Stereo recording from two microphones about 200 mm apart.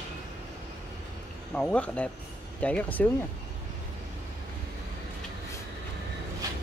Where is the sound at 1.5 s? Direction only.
5° left (ahead or behind).